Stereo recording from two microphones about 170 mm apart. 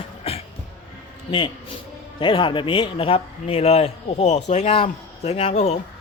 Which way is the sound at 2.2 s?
30° left (ahead or behind).